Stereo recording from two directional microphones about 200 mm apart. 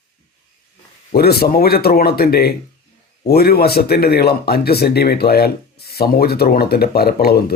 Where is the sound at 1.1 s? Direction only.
50° left (ahead or behind).